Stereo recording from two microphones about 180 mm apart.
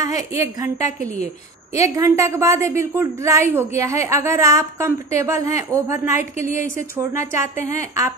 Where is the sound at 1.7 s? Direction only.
15° right (ahead or behind).